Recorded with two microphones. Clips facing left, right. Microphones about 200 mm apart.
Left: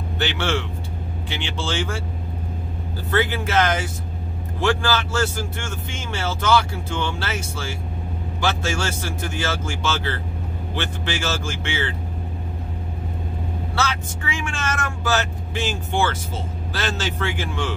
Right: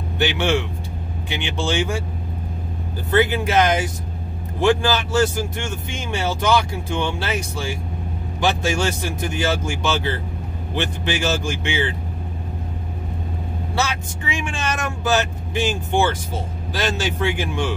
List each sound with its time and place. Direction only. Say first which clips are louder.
0.2 s a man's voice: right 4 dB; 15° right (ahead or behind)
3.1 s a man's voice: right 4 dB; 15° right (ahead or behind)
13.7 s a man's voice: right 1 dB; 15° right (ahead or behind)